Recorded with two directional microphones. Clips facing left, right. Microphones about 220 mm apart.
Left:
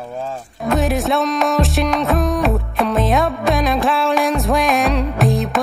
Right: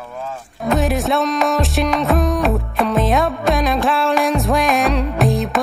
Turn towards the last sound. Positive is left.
turn(degrees=0)  # may be behind; listen again after turning